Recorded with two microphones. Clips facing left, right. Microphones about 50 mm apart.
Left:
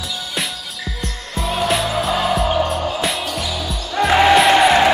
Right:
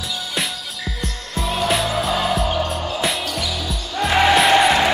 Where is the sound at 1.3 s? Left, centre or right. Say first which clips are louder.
Left 1 dB; centre.